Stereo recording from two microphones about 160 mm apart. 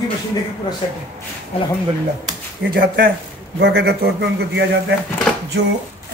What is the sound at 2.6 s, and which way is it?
Speech, 70° right (ahead or behind).